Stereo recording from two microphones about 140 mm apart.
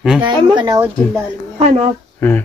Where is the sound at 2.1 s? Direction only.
15° left (ahead or behind).